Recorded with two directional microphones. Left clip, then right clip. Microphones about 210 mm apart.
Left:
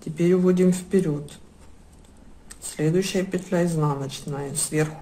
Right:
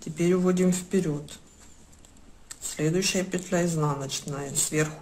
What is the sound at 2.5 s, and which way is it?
Speech, centre (ahead or behind).